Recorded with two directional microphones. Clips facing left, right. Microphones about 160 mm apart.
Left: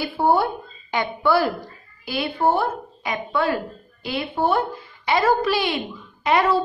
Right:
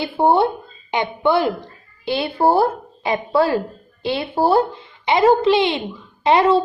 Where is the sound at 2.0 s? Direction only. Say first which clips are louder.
Right 4 dB; 30° right (ahead or behind).